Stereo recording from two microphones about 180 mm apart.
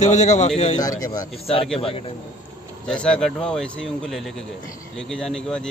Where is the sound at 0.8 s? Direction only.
20° left (ahead or behind).